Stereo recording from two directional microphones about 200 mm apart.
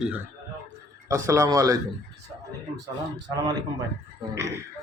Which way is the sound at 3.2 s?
20° right (ahead or behind).